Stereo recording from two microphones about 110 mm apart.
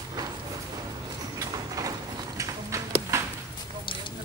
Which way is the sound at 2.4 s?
30° right (ahead or behind).